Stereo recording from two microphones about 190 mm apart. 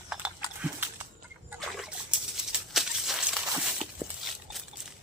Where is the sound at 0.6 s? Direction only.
10° right (ahead or behind).